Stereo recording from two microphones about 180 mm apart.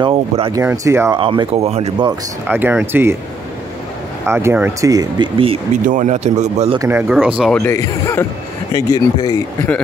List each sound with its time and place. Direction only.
0.0 s speech: 25° right (ahead or behind)
0.6 s speech: 15° right (ahead or behind)
1.1 s speech: 25° right (ahead or behind)
2.4 s speech: 10° right (ahead or behind)
4.3 s speech: 15° right (ahead or behind)
5.9 s a man's voice: 40° right (ahead or behind)
6.8 s speech: 10° right (ahead or behind)
7.6 s speech: 15° left (ahead or behind)